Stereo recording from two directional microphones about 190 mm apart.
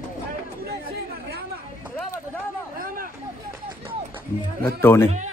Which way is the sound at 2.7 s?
50° right (ahead or behind).